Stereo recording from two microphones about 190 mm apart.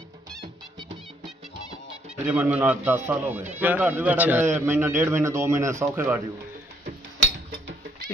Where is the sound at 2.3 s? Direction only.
5° right (ahead or behind).